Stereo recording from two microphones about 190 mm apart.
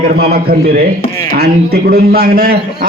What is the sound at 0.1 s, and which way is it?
A man's voice, 55° right (ahead or behind).